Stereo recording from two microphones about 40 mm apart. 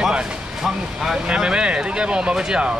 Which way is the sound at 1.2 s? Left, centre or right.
Right.